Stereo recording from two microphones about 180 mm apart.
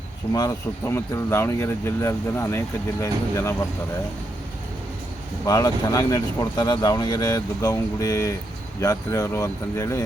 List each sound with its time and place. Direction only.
0.3 s speech: 15° left (ahead or behind)
5.5 s speech: 20° left (ahead or behind)